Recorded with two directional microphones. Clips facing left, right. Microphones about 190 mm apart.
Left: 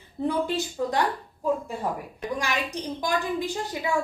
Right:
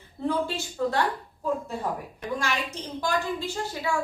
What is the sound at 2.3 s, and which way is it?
A woman's voice, 15° left (ahead or behind).